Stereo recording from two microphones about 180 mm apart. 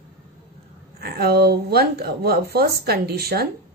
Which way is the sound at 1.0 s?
60° right (ahead or behind).